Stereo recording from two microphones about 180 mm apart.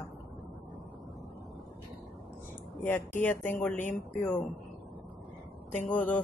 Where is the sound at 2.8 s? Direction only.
10° left (ahead or behind).